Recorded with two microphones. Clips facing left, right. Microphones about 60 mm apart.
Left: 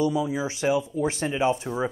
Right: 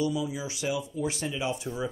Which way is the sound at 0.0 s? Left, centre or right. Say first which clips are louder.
Left 5 dB; left.